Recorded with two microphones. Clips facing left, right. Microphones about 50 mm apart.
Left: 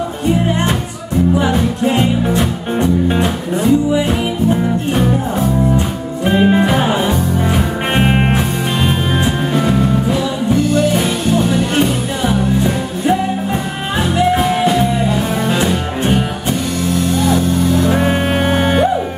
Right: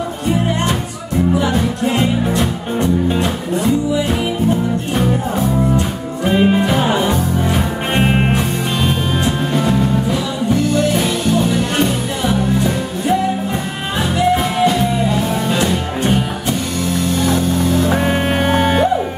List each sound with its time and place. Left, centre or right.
1.5 s music: centre
6.3 s music: centre
15.5 s music: centre
17.3 s music: centre